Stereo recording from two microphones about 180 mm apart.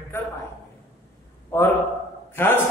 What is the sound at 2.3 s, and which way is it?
Speech, 10° left (ahead or behind).